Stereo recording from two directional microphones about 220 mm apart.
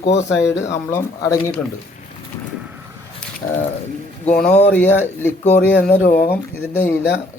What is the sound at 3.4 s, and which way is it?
Speech, 15° left (ahead or behind).